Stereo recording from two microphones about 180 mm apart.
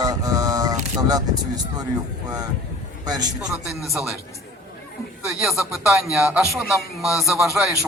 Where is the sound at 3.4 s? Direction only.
5° right (ahead or behind).